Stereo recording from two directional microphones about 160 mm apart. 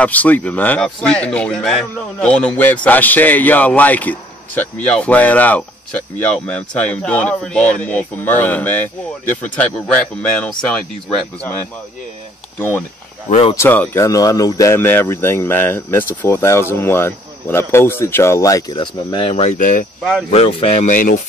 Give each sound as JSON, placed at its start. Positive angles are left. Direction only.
{"t": 0.0, "sound": "speech", "side_deg": 10}
{"t": 12.5, "sound": "speech", "side_deg": 15}
{"t": 13.3, "sound": "speech", "side_deg": 35}
{"t": 13.6, "sound": "speech", "side_deg": 15}
{"t": 19.6, "sound": "speech", "side_deg": 55}
{"t": 20.0, "sound": "speech", "side_deg": 0}
{"t": 20.2, "sound": "speech", "side_deg": 40}